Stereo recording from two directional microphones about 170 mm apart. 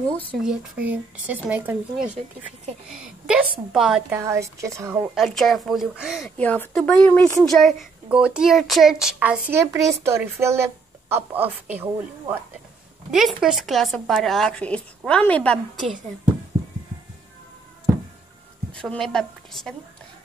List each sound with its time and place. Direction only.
0.4 s a woman's voice: 5° right (ahead or behind)
4.1 s speech: 15° right (ahead or behind)
5.1 s a woman's voice: centre (ahead or behind)
9.5 s a woman's voice: 15° right (ahead or behind); by 16.0 s 5° left (ahead or behind)
18.7 s a woman's voice: 5° left (ahead or behind)